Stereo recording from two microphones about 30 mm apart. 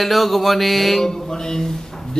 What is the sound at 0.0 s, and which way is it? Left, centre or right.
Music, centre.